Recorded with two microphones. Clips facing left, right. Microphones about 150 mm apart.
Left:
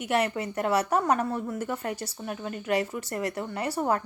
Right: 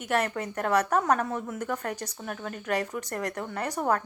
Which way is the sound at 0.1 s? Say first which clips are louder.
Left 1 dB; 10° left (ahead or behind).